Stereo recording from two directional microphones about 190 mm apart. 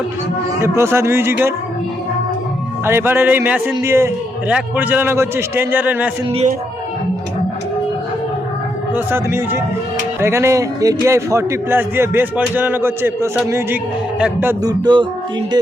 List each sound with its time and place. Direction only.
0.6 s a man's voice: 15° right (ahead or behind)
2.8 s a man's voice: 10° right (ahead or behind)
9.0 s a man's voice: 10° right (ahead or behind)
14.6 s speech: 20° right (ahead or behind)